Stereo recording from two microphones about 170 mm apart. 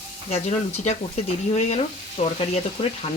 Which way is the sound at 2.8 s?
25° left (ahead or behind).